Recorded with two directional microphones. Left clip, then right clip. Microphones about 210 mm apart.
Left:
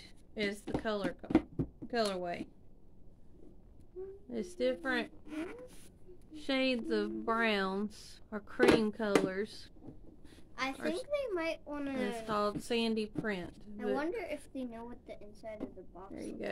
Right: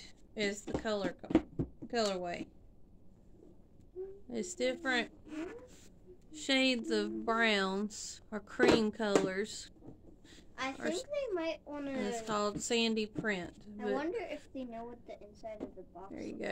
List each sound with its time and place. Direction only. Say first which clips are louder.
0.0 s a sound: right 1 dB; centre (ahead or behind)
0.7 s a woman's voice: left 1 dB; 5° left (ahead or behind)
4.3 s a woman's voice: left 1 dB; 5° right (ahead or behind)
5.2 s speech: left 1 dB; 35° left (ahead or behind)
6.3 s a woman's voice: right 2 dB; 5° right (ahead or behind)
10.8 s a woman's voice: even; 5° right (ahead or behind)
11.1 s a woman's voice: left 1 dB; 25° left (ahead or behind)
12.0 s a woman's voice: left 1 dB; centre (ahead or behind)
13.9 s a woman's voice: even; 25° left (ahead or behind)
16.1 s a woman's voice: even; 5° right (ahead or behind)